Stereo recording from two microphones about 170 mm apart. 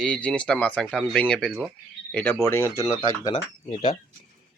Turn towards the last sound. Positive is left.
turn(degrees=40)  # may be behind; listen again after turning